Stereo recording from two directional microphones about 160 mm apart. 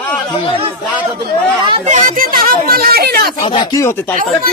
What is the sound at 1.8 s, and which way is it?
Speech, 60° right (ahead or behind).